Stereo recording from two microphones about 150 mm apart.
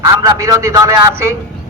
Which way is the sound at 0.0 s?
20° right (ahead or behind).